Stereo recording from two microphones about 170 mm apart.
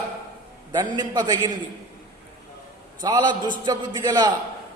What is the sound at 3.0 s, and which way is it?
A man's voice, 25° right (ahead or behind).